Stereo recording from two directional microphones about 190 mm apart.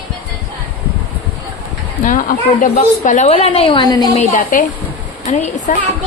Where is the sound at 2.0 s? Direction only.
45° left (ahead or behind); by 4.1 s 20° left (ahead or behind).